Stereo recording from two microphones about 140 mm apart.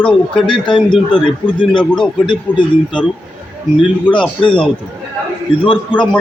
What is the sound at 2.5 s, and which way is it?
Speech, 10° left (ahead or behind).